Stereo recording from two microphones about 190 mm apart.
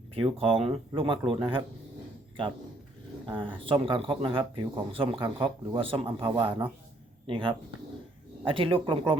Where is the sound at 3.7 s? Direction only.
25° right (ahead or behind).